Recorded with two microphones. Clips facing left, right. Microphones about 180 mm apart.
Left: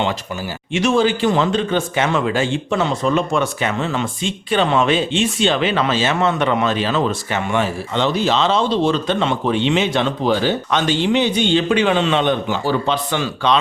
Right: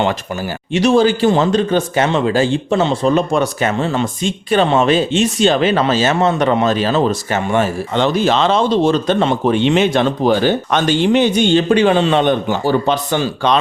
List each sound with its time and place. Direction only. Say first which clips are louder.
0.7 s speech: right 4 dB; 35° right (ahead or behind)